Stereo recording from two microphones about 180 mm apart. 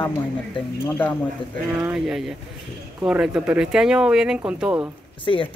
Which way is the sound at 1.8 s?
5° right (ahead or behind).